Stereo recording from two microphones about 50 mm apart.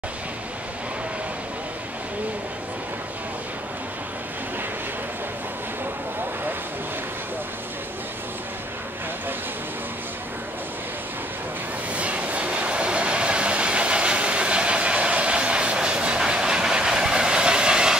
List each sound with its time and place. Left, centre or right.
11.9 s train: right